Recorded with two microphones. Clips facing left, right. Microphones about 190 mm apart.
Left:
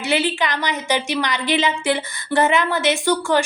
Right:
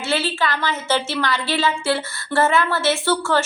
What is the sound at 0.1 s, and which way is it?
A woman's voice, 15° left (ahead or behind).